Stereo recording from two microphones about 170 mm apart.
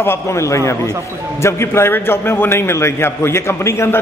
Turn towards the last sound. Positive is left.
turn(degrees=15)  # may be behind; listen again after turning